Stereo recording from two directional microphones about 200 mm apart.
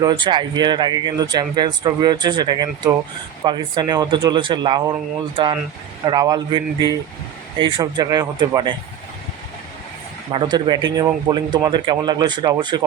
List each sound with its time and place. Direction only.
0.0 s speech: 20° right (ahead or behind)
6.1 s speech: 20° right (ahead or behind)
10.3 s speech: 20° right (ahead or behind)